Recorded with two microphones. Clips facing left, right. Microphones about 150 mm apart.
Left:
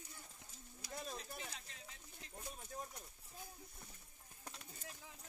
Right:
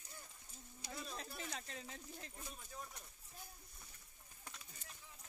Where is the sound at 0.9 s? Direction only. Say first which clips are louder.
Left 2 dB; 45° left (ahead or behind).